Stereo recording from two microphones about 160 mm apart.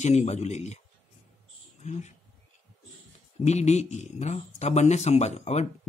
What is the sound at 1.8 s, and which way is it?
Speech, 45° left (ahead or behind).